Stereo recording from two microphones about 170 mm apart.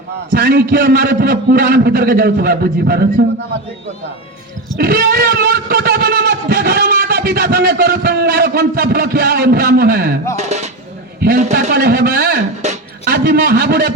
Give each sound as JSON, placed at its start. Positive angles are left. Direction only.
{"t": 0.3, "sound": "a man's voice", "side_deg": -65}
{"t": 4.8, "sound": "music", "side_deg": -65}
{"t": 10.3, "sound": "dishes", "side_deg": -40}
{"t": 11.5, "sound": "a man's voice", "side_deg": -65}
{"t": 12.6, "sound": "music", "side_deg": -40}
{"t": 13.1, "sound": "a man's voice", "side_deg": -65}